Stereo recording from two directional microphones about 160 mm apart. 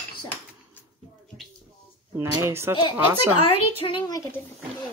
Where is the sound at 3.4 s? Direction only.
35° left (ahead or behind).